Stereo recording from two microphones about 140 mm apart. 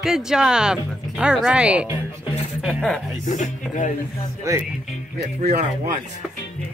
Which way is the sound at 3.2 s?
60° left (ahead or behind).